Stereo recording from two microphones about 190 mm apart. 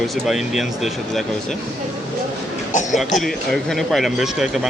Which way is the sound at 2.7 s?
40° left (ahead or behind).